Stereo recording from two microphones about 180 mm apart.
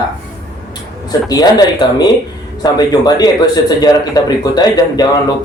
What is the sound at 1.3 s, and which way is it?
A man's voice, 20° left (ahead or behind).